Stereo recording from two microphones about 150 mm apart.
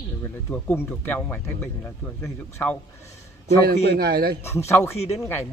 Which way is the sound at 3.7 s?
90° right.